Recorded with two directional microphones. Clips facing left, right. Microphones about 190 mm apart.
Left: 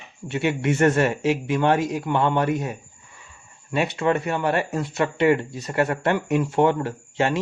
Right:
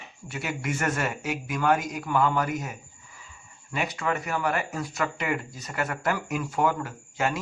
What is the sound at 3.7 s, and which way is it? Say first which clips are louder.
Speech: left 7 dB; 25° left (ahead or behind).